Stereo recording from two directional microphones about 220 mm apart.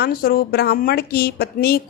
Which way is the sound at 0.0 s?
45° left (ahead or behind).